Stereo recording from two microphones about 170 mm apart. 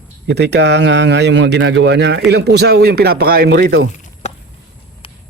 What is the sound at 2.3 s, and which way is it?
Speech, 75° right (ahead or behind).